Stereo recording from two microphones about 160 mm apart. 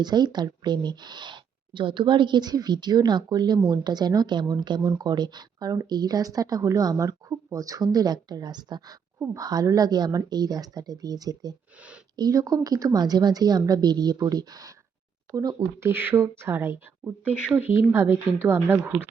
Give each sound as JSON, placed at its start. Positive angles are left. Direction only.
{"t": 0.0, "sound": "speech", "side_deg": -25}